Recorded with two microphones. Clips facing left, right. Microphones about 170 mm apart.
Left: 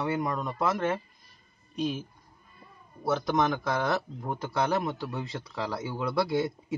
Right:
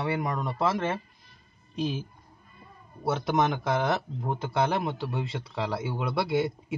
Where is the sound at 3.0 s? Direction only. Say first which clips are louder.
Even; 25° right (ahead or behind).